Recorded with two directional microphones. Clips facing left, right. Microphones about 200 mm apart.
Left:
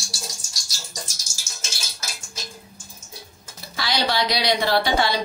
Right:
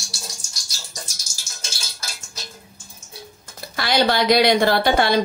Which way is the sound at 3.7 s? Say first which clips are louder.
Right 5 dB; 55° right (ahead or behind).